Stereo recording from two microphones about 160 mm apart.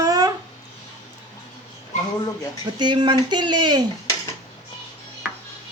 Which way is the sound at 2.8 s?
30° right (ahead or behind).